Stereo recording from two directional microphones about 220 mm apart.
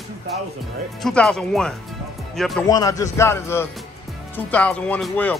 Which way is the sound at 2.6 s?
15° left (ahead or behind).